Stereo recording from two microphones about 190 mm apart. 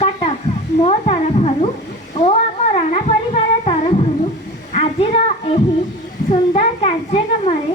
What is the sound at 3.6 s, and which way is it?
Humming, 35° left (ahead or behind).